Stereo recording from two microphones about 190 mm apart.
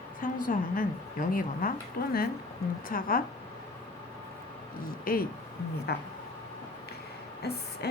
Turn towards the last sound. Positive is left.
turn(degrees=60)  # may be behind; listen again after turning